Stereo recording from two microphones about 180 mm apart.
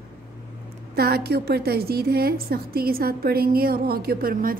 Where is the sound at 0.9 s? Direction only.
60° right (ahead or behind).